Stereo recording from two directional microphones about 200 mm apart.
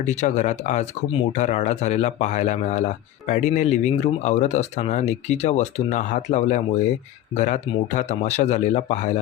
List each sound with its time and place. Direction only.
0.0 s speech: 35° left (ahead or behind)